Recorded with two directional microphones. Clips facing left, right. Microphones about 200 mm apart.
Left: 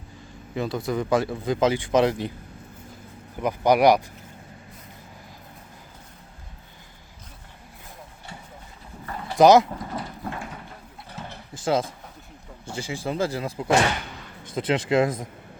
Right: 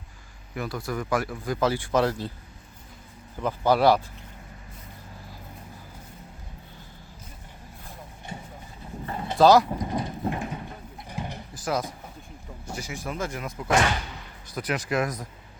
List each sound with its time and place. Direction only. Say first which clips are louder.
0.5 s speech: left 5 dB; 20° left (ahead or behind)
3.4 s speech: left 3 dB; 15° left (ahead or behind)
9.0 s dog: right 2 dB; 25° right (ahead or behind)
9.4 s speech: left 2 dB; 20° left (ahead or behind)
9.6 s a sound: right 4 dB; 15° right (ahead or behind)
11.5 s speech: left 5 dB; 25° left (ahead or behind)